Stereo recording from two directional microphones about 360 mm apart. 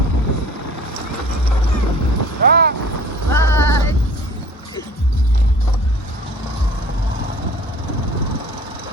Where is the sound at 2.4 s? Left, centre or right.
Right.